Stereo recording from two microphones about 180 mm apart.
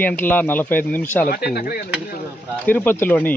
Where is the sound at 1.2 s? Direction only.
55° left (ahead or behind).